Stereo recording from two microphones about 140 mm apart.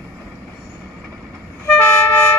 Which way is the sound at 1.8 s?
15° left (ahead or behind).